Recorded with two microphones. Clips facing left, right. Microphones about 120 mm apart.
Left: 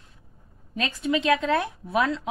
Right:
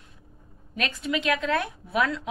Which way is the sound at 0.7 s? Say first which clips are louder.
Left 3 dB; 30° left (ahead or behind).